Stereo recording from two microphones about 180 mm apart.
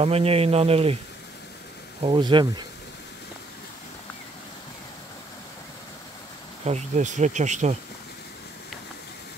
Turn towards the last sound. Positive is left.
turn(degrees=-40)  # may be behind; listen again after turning